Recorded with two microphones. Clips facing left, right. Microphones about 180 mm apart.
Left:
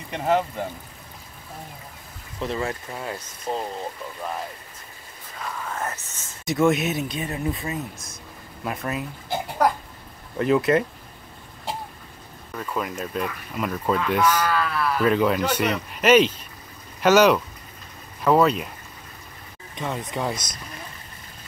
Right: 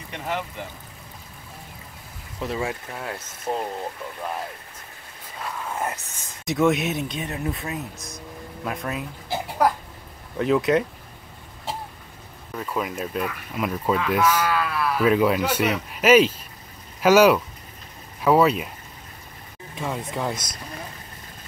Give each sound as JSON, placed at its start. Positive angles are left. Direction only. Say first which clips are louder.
{"t": 0.3, "sound": "speech", "louder": "left 8 dB", "side_deg": 45}
{"t": 2.4, "sound": "speech", "louder": "even", "side_deg": -5}
{"t": 5.4, "sound": "speech", "louder": "right 1 dB", "side_deg": -10}
{"t": 6.4, "sound": "speech", "louder": "even", "side_deg": 0}
{"t": 12.5, "sound": "speech", "louder": "right 1 dB", "side_deg": -5}
{"t": 19.7, "sound": "speech", "louder": "even", "side_deg": 0}